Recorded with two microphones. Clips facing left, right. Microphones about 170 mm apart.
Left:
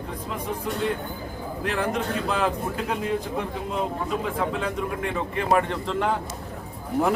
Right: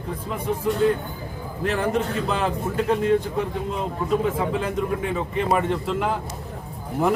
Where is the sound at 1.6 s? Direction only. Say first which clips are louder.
Right 3 dB; centre (ahead or behind).